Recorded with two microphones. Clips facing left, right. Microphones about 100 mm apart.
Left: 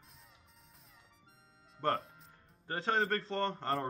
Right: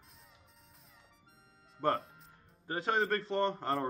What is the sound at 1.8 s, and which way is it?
Music, centre (ahead or behind).